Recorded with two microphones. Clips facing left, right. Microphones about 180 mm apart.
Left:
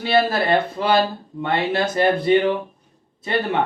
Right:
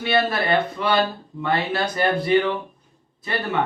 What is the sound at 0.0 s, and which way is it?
Speech, 30° left (ahead or behind).